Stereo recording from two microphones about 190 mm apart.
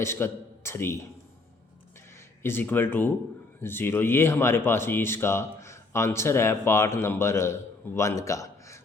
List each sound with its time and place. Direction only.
0.0 s a man's voice: 15° left (ahead or behind)
2.4 s speech: 10° left (ahead or behind)